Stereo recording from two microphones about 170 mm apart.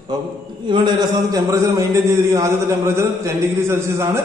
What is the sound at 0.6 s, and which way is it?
A man's voice, 25° right (ahead or behind).